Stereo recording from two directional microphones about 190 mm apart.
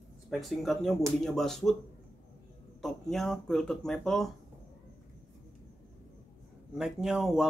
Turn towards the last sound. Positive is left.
turn(degrees=0)  # may be behind; listen again after turning